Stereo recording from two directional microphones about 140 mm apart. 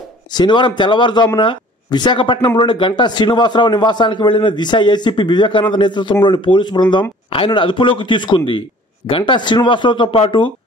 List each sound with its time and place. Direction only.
0.3 s a man's voice: 30° left (ahead or behind)